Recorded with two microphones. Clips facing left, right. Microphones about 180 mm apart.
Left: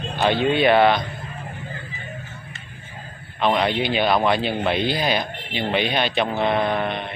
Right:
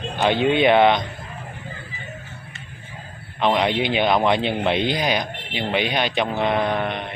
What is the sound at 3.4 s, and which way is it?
A man's voice, 20° right (ahead or behind).